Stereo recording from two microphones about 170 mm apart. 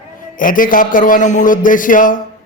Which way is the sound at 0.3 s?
55° left (ahead or behind).